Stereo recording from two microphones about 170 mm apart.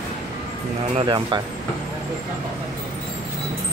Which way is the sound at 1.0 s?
25° right (ahead or behind).